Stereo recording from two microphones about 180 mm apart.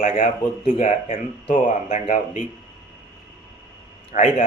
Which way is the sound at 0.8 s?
40° left (ahead or behind).